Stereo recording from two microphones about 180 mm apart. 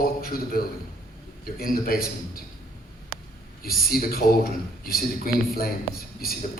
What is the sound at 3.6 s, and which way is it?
A man's voice, 55° left (ahead or behind).